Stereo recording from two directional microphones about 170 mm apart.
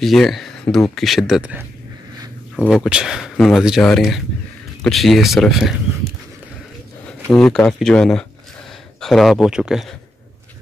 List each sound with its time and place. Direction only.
0.0 s speech: centre (ahead or behind)
7.2 s speech: 5° left (ahead or behind)